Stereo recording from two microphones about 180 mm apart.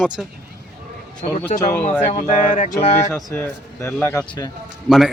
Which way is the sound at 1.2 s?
40° left (ahead or behind).